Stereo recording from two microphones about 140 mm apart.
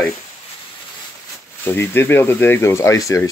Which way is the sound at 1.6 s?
15° left (ahead or behind).